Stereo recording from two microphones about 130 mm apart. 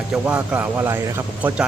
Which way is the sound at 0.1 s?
10° right (ahead or behind).